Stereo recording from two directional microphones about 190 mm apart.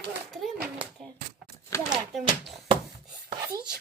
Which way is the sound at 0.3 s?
Centre (ahead or behind).